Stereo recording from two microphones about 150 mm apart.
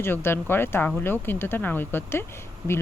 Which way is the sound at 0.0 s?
15° left (ahead or behind).